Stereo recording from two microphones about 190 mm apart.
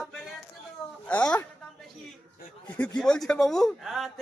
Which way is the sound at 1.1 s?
5° left (ahead or behind).